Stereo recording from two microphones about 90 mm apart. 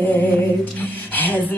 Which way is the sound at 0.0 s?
20° left (ahead or behind).